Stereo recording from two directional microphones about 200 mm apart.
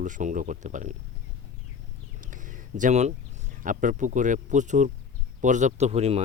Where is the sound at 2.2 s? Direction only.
40° right (ahead or behind).